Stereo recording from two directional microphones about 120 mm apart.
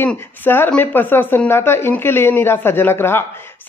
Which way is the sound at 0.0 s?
15° left (ahead or behind).